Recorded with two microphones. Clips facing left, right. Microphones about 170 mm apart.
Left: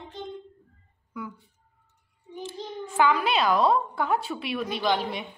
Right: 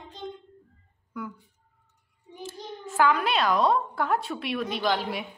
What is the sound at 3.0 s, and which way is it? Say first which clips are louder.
A woman's voice: even; centre (ahead or behind).